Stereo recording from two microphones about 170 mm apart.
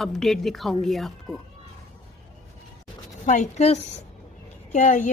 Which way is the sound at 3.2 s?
45° left (ahead or behind).